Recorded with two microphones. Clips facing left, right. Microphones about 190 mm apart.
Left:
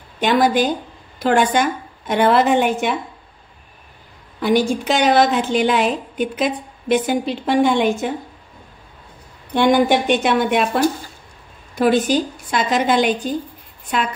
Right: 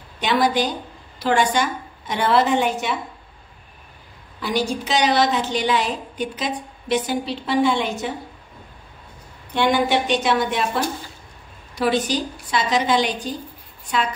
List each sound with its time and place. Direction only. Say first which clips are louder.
0.2 s a woman's voice: left 4 dB; 50° left (ahead or behind)
4.4 s a woman's voice: left 6 dB; 55° left (ahead or behind)
9.5 s a woman's voice: left 5 dB; 50° left (ahead or behind)